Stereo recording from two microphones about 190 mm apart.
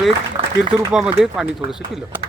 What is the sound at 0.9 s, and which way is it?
Speech, 5° right (ahead or behind).